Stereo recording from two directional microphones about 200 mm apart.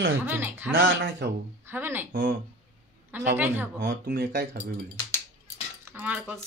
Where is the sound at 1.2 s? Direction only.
55° right (ahead or behind).